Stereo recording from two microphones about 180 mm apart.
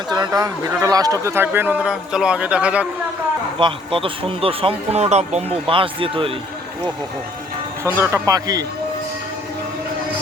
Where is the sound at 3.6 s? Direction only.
30° right (ahead or behind).